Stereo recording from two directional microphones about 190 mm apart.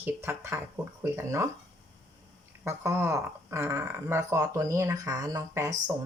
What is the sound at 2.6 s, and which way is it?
Speech, 15° right (ahead or behind).